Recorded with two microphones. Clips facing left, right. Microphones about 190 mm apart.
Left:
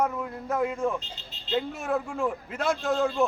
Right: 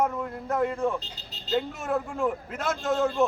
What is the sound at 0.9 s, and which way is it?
Speech, 35° right (ahead or behind).